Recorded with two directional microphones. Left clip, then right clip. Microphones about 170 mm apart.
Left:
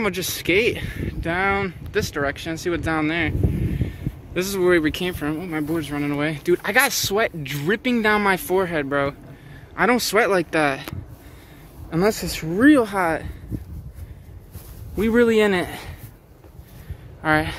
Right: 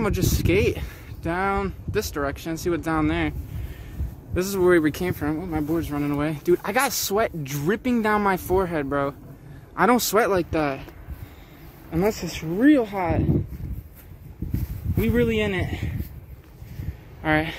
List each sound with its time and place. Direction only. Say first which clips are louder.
0.0 s speech: left 1 dB; 10° right (ahead or behind)
9.8 s speech: left 1 dB; 15° right (ahead or behind)
10.3 s speech: left 4 dB; centre (ahead or behind)
11.9 s speech: left 3 dB; 5° left (ahead or behind)
15.0 s speech: left 6 dB; 30° left (ahead or behind)
15.6 s speech: left 3 dB; 20° left (ahead or behind)
17.2 s a woman's voice: left 3 dB; 5° right (ahead or behind)